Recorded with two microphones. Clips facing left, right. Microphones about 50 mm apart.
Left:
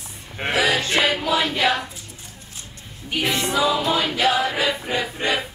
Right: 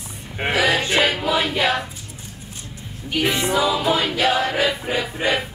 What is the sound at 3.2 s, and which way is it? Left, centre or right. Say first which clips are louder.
Music: right 1 dB; centre.